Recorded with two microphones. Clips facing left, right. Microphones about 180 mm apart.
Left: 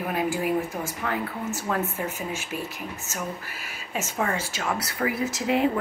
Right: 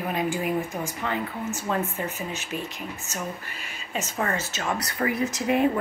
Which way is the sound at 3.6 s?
10° left (ahead or behind).